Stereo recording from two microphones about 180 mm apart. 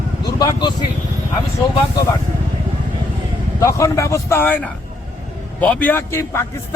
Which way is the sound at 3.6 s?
15° left (ahead or behind).